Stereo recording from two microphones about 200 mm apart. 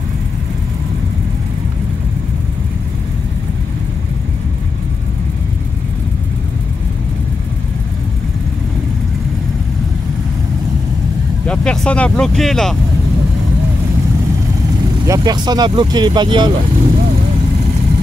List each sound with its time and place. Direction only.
11.4 s speech: 5° left (ahead or behind)
15.0 s speech: 20° right (ahead or behind)